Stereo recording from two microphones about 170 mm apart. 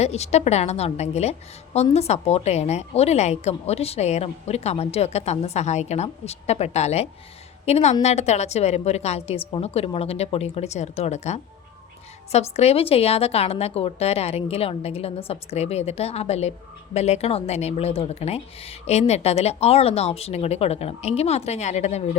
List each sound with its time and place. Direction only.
0.0 s a woman's voice: 40° left (ahead or behind)